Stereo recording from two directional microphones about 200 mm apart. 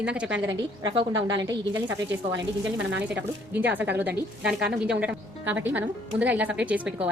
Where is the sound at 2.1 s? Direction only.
60° right (ahead or behind).